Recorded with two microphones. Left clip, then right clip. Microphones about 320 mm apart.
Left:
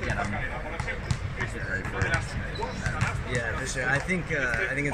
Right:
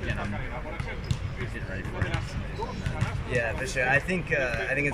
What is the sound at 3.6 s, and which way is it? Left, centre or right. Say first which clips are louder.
Speech: right 4 dB; right.